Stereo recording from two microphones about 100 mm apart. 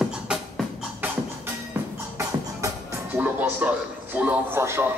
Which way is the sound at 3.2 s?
15° right (ahead or behind).